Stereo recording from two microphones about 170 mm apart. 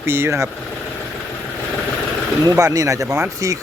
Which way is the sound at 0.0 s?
15° right (ahead or behind).